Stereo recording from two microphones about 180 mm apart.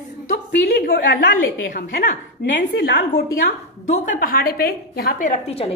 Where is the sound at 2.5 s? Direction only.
70° left (ahead or behind).